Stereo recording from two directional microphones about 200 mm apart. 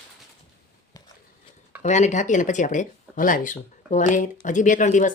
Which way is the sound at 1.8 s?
35° left (ahead or behind).